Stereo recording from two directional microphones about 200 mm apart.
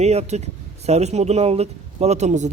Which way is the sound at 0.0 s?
35° right (ahead or behind).